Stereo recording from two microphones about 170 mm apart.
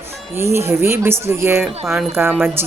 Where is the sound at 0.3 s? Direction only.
15° right (ahead or behind).